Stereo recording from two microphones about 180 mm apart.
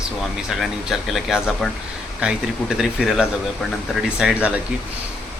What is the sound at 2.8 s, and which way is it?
Speech, centre (ahead or behind).